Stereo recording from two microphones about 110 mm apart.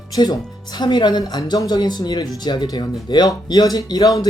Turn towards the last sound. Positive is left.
turn(degrees=35)  # may be behind; listen again after turning